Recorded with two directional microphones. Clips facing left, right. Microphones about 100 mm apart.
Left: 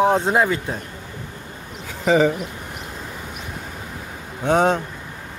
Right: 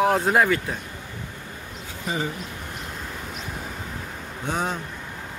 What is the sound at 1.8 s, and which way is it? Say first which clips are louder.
Speech: left 12 dB; 90° left.